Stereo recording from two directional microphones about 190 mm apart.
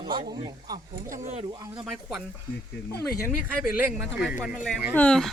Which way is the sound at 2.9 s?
55° left (ahead or behind).